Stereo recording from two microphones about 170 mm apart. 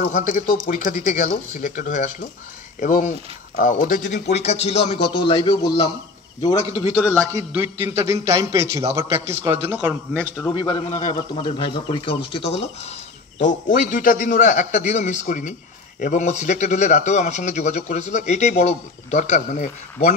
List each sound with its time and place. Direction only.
0.0 s a man's voice: 50° left (ahead or behind)
4.3 s a man's voice: 40° left (ahead or behind)
6.4 s a man's voice: 40° left (ahead or behind)
7.0 s a man's voice: 5° left (ahead or behind)
7.3 s a man's voice: 15° right (ahead or behind)
10.1 s a man's voice: 5° left (ahead or behind)
10.5 s a man's voice: 30° left (ahead or behind)
13.4 s a man's voice: 45° left (ahead or behind)